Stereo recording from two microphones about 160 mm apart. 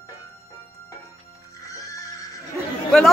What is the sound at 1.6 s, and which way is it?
Music, 20° left (ahead or behind).